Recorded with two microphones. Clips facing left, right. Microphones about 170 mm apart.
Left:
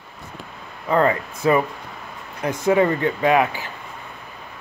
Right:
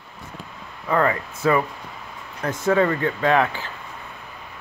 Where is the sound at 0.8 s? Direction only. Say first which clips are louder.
Left 2 dB; 25° left (ahead or behind).